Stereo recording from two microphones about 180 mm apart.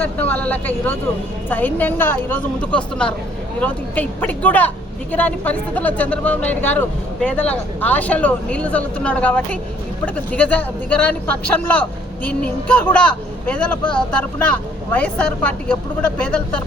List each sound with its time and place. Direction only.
0.0 s speech: 10° left (ahead or behind)